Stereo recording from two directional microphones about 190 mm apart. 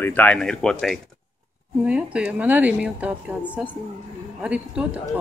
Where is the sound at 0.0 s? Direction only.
10° left (ahead or behind).